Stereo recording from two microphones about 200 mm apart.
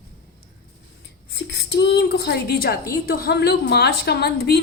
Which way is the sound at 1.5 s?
60° left (ahead or behind).